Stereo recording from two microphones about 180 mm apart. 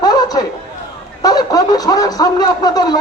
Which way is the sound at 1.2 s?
20° left (ahead or behind).